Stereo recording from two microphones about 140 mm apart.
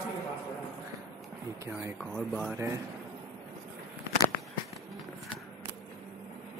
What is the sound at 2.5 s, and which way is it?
Speech, 20° right (ahead or behind).